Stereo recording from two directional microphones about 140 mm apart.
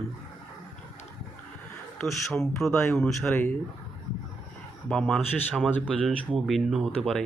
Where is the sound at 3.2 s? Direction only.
15° left (ahead or behind).